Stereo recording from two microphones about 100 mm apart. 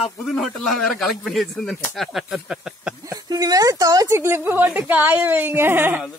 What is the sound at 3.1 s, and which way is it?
A woman's voice, 40° right (ahead or behind).